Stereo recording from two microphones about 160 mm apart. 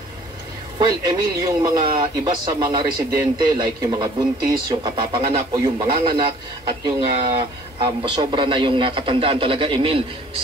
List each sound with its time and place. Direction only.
0.7 s a man's voice: 25° right (ahead or behind)